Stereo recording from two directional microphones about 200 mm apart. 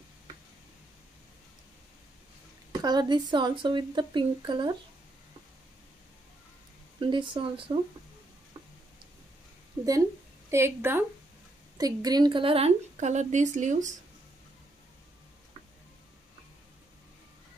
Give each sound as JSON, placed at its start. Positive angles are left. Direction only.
{"t": 2.8, "sound": "speech", "side_deg": -20}
{"t": 7.0, "sound": "speech", "side_deg": -25}
{"t": 10.5, "sound": "a woman's voice", "side_deg": -10}